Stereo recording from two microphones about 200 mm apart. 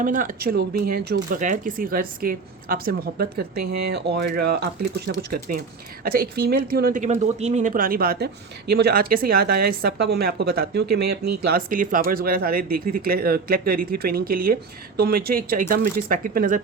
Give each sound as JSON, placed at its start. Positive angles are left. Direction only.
{"t": 0.0, "sound": "a woman's voice", "side_deg": -40}